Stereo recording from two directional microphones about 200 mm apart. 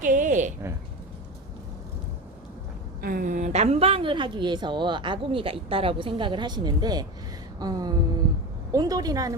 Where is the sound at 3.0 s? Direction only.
45° right (ahead or behind).